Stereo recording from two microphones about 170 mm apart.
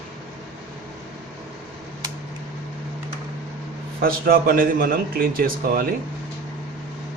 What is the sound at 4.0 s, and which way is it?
A man's voice, 60° right (ahead or behind).